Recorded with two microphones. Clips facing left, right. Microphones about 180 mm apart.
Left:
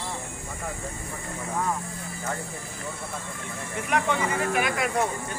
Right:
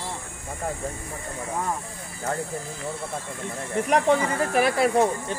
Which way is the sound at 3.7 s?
35° right (ahead or behind).